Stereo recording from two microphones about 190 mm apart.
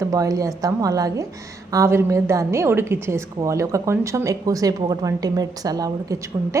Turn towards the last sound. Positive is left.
turn(degrees=-15)  # may be behind; listen again after turning